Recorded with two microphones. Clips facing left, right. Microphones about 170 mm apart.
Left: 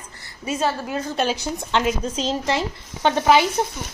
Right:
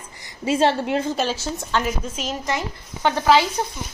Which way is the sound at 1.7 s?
25° left (ahead or behind).